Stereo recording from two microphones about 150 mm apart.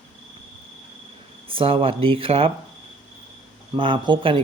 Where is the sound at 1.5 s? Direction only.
35° right (ahead or behind).